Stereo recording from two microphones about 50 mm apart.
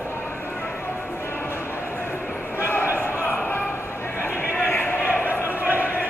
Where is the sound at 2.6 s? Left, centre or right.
Left.